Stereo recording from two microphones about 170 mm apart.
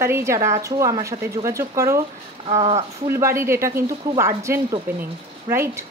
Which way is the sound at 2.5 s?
35° right (ahead or behind).